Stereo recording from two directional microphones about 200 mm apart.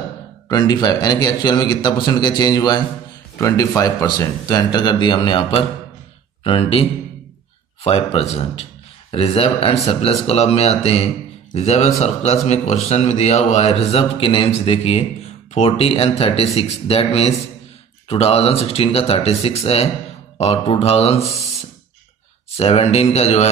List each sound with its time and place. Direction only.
0.5 s a man's voice: 20° left (ahead or behind)
22.6 s a man's voice: 30° left (ahead or behind)